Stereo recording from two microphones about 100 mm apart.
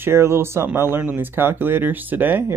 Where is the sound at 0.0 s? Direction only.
25° right (ahead or behind).